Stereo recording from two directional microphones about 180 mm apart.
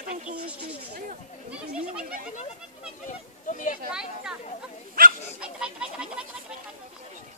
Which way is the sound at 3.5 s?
45° left (ahead or behind).